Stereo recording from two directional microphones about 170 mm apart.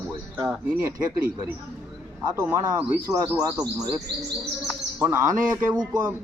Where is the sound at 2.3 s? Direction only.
15° right (ahead or behind).